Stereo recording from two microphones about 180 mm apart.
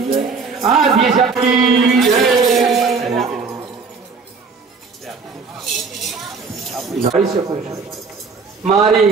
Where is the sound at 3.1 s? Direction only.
Centre (ahead or behind).